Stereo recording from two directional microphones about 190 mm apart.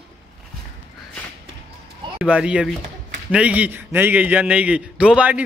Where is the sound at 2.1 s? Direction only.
5° right (ahead or behind).